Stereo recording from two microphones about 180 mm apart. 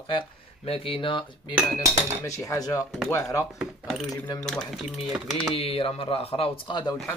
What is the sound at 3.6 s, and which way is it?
Speech, centre (ahead or behind).